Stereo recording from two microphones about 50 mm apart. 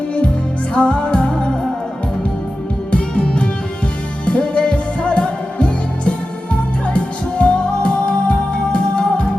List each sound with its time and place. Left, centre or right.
0.7 s music: left
2.9 s music: left